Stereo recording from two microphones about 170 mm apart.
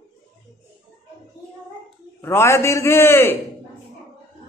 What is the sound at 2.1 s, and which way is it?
A man's voice, 15° left (ahead or behind).